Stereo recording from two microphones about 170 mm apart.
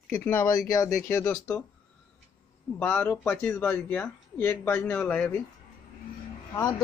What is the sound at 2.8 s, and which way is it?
Speech, 10° left (ahead or behind).